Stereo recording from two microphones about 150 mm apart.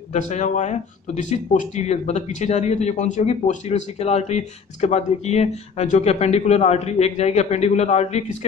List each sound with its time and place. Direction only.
0.1 s speech: 50° left (ahead or behind)